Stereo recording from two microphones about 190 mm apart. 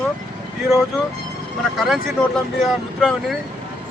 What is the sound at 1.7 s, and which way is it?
Speech, centre (ahead or behind).